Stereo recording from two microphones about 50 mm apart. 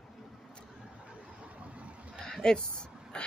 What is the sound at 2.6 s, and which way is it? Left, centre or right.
Speech, centre.